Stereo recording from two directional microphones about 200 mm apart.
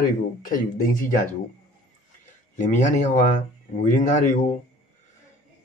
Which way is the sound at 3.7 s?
35° left (ahead or behind).